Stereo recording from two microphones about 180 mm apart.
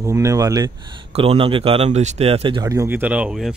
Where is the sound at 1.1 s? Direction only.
35° right (ahead or behind).